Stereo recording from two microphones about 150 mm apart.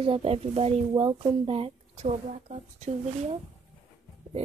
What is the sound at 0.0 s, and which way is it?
Speech, 40° right (ahead or behind).